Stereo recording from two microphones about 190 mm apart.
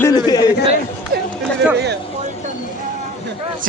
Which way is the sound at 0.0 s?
20° left (ahead or behind).